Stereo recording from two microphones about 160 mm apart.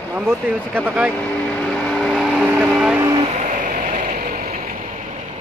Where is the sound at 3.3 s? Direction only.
50° right (ahead or behind).